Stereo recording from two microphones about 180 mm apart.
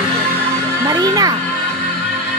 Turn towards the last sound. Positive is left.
turn(degrees=-20)  # may be behind; listen again after turning